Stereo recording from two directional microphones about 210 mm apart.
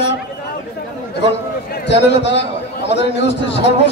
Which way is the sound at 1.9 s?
55° left (ahead or behind).